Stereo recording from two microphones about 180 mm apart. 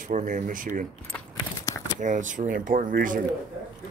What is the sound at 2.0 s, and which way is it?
Speech, 45° right (ahead or behind).